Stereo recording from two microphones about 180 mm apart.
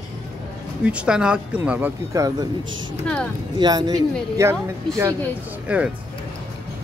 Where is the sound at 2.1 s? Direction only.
20° right (ahead or behind).